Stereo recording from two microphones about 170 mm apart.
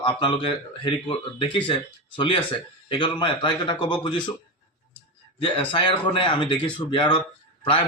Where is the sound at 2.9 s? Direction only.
30° left (ahead or behind).